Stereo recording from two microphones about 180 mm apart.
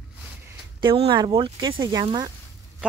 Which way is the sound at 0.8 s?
25° right (ahead or behind).